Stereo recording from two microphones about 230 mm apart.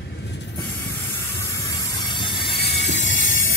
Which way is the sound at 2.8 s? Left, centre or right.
Left.